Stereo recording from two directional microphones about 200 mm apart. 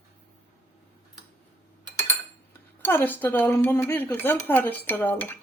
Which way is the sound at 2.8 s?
10° left (ahead or behind).